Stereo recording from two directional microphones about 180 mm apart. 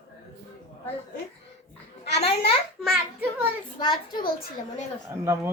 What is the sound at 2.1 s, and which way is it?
Speech, 35° left (ahead or behind).